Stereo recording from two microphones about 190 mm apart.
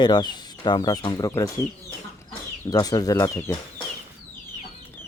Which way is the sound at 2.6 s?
20° left (ahead or behind).